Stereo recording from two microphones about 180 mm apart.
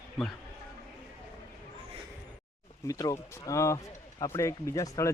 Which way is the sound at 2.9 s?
20° left (ahead or behind).